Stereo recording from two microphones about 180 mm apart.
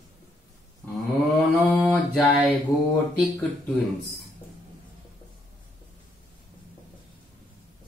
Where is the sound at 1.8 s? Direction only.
5° left (ahead or behind).